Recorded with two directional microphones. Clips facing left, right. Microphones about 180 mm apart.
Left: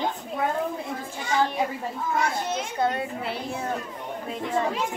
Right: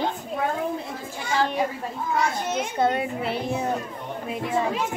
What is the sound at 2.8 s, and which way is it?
Speech, 25° right (ahead or behind).